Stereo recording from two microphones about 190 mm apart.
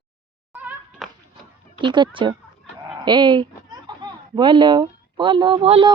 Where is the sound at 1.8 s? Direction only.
25° right (ahead or behind).